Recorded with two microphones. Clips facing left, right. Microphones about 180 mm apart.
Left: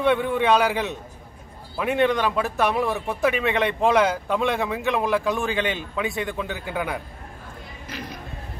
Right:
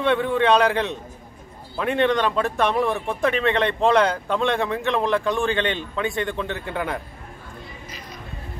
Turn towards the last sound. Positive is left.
turn(degrees=5)  # may be behind; listen again after turning